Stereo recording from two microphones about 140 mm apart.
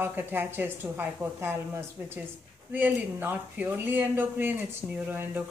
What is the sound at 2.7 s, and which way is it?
Speech, 15° right (ahead or behind).